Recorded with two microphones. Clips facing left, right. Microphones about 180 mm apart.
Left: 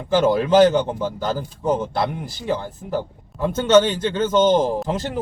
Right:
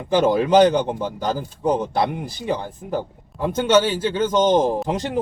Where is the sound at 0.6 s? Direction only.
15° right (ahead or behind).